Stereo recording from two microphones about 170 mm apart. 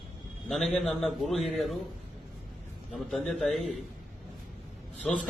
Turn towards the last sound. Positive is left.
turn(degrees=0)  # may be behind; listen again after turning